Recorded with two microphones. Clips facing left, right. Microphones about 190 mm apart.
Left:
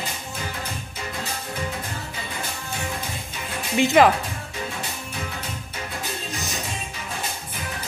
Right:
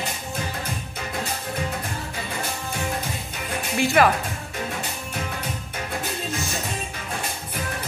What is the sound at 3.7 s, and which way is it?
Speech, 20° left (ahead or behind).